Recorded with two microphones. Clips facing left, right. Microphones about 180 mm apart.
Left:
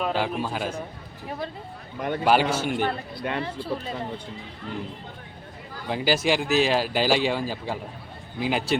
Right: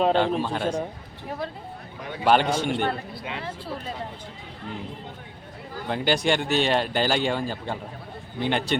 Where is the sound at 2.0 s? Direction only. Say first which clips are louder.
Left 9 dB; 55° left (ahead or behind).